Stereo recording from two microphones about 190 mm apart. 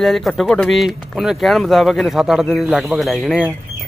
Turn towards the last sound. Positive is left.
turn(degrees=0)  # may be behind; listen again after turning